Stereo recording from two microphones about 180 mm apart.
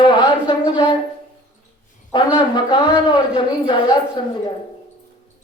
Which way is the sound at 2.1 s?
25° left (ahead or behind).